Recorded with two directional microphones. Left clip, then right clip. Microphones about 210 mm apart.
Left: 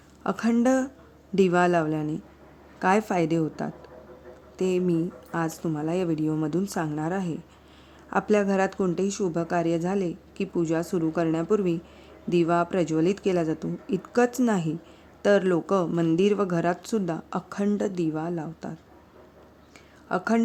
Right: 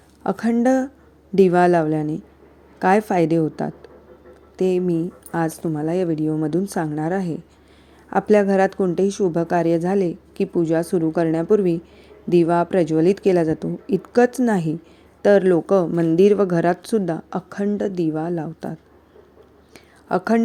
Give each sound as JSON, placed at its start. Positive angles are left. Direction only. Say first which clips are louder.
{"t": 0.2, "sound": "speech", "louder": "right 4 dB", "side_deg": -15}
{"t": 19.7, "sound": "whispering", "louder": "right 6 dB", "side_deg": -20}